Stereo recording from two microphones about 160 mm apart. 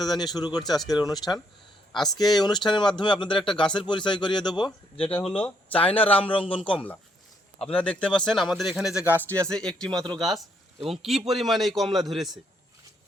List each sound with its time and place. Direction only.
0.0 s speech: 25° left (ahead or behind)
1.9 s speech: centre (ahead or behind)
2.1 s speech: 25° left (ahead or behind)
5.1 s speech: 5° left (ahead or behind)
6.1 s a man's voice: 35° left (ahead or behind)
7.6 s speech: 10° left (ahead or behind); by 9.4 s 10° right (ahead or behind)
9.4 s speech: 5° left (ahead or behind)